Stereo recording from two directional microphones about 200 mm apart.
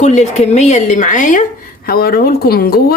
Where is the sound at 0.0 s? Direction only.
35° left (ahead or behind).